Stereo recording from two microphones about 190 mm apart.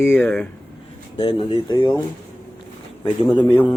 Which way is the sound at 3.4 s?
10° left (ahead or behind).